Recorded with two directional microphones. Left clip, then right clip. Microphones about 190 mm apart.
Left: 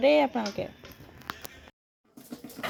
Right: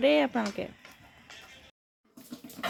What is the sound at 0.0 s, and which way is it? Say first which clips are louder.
Speech: left 2 dB; 20° right (ahead or behind).